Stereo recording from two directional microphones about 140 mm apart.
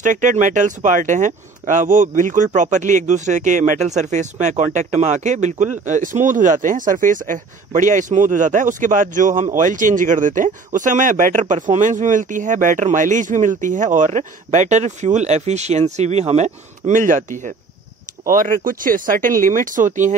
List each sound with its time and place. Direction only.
0.0 s speech: 65° right (ahead or behind)
18.2 s speech: 75° right (ahead or behind)